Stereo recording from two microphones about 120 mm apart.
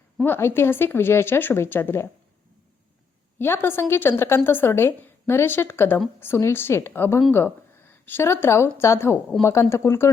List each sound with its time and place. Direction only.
0.2 s speech: 20° left (ahead or behind)
3.3 s speech: 20° left (ahead or behind)